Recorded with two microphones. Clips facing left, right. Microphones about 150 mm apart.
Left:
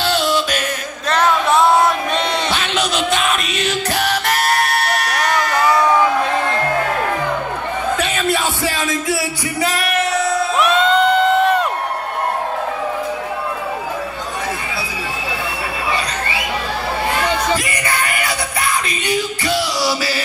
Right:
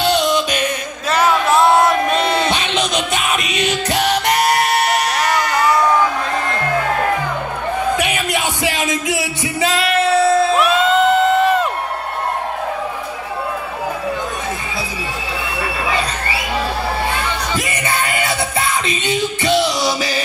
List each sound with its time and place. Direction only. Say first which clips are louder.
0.0 s music: right 2 dB; 5° left (ahead or behind)
3.9 s music: right 4 dB; 20° right (ahead or behind)
5.1 s a sound: right 1 dB; centre (ahead or behind)
5.5 s music: left 1 dB; centre (ahead or behind)
8.0 s music: left 1 dB; 15° right (ahead or behind); by 10.5 s 30° right (ahead or behind)
10.6 s crowd: even; 5° right (ahead or behind)
17.6 s music: right 1 dB; 25° right (ahead or behind)